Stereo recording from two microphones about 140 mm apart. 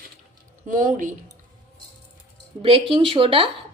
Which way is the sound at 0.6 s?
70° right (ahead or behind).